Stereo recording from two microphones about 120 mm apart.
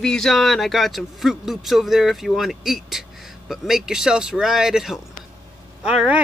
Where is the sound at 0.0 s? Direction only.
5° left (ahead or behind).